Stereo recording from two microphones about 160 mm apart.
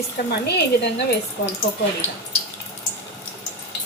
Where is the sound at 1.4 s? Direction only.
90° left.